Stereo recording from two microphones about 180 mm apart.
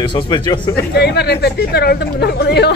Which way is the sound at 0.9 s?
65° left (ahead or behind).